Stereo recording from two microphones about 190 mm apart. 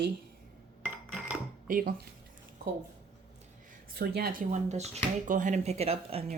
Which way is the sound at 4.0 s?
55° right (ahead or behind).